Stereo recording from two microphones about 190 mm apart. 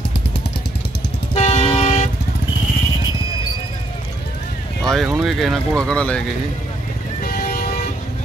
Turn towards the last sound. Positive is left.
turn(degrees=50)  # may be behind; listen again after turning